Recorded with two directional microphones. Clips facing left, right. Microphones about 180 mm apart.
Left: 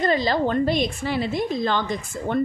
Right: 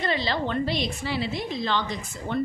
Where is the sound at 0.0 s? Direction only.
45° left (ahead or behind).